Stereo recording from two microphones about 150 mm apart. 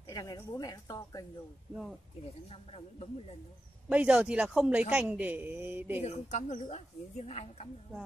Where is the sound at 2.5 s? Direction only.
40° left (ahead or behind).